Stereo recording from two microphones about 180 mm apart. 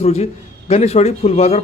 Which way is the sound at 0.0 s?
35° left (ahead or behind).